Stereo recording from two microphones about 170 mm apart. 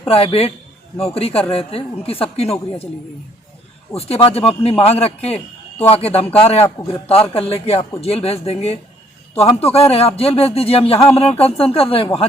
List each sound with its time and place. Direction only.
0.1 s speech: 35° left (ahead or behind)
3.9 s speech: 35° left (ahead or behind)